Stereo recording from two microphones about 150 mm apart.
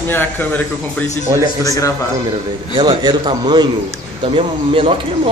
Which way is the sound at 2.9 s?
30° right (ahead or behind).